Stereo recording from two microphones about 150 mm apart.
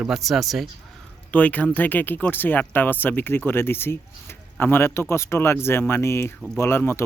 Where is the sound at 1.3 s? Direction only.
10° left (ahead or behind).